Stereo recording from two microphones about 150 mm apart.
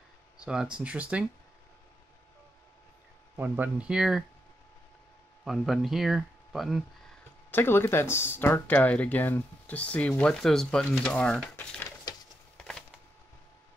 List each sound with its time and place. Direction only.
0.4 s speech: 5° right (ahead or behind)
3.3 s speech: 10° right (ahead or behind)
5.4 s speech: centre (ahead or behind)
7.5 s speech: 15° left (ahead or behind)
12.1 s a sound: 25° left (ahead or behind)
12.5 s a sound: 5° left (ahead or behind)